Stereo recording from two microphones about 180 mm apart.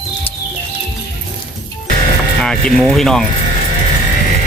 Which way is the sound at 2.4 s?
5° left (ahead or behind).